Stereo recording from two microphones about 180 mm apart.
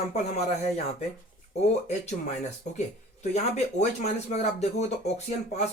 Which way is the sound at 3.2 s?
40° left (ahead or behind).